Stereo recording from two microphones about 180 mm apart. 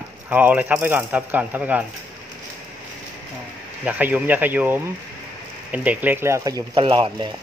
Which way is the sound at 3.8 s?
10° right (ahead or behind).